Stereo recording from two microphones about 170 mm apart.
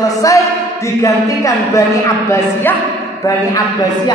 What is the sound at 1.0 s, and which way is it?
Speech, 20° left (ahead or behind).